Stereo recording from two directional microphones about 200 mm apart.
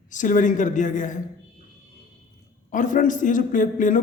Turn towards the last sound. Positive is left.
turn(degrees=40)  # may be behind; listen again after turning